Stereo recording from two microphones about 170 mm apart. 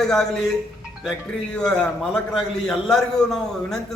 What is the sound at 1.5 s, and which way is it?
A man's voice, 5° left (ahead or behind).